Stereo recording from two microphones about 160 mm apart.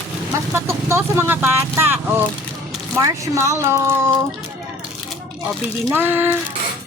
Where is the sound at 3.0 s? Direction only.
20° right (ahead or behind).